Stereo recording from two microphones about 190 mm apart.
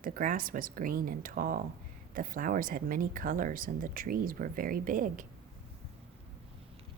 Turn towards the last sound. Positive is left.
turn(degrees=-45)  # may be behind; listen again after turning